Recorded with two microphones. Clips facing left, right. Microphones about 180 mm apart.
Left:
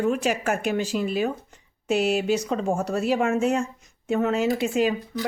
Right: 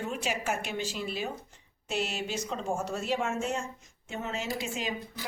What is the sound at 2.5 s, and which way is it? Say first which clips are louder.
Speech: left 8 dB; 60° left (ahead or behind).